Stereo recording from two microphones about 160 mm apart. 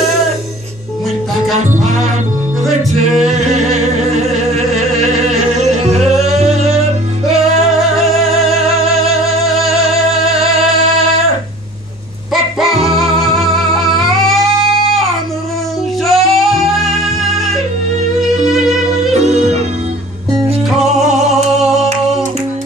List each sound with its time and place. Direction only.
7.2 s music: centre (ahead or behind)
12.5 s music: centre (ahead or behind)
16.1 s music: centre (ahead or behind)
19.1 s music: 45° right (ahead or behind)